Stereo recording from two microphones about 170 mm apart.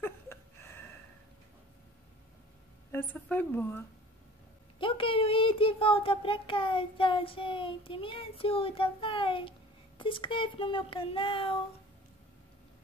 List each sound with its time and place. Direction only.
0.0 s a sound: 15° left (ahead or behind)
2.9 s a woman's voice: 10° left (ahead or behind)
4.7 s speech: 30° left (ahead or behind)